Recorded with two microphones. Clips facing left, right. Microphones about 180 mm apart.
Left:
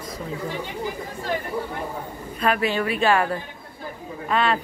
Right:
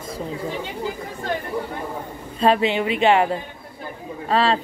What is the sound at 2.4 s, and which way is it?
A woman's voice, 25° right (ahead or behind).